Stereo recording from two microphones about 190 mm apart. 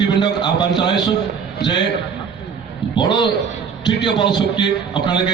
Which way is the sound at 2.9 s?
25° left (ahead or behind).